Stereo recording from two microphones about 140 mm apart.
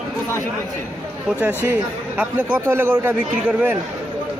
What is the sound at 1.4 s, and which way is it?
A man's voice, 15° right (ahead or behind).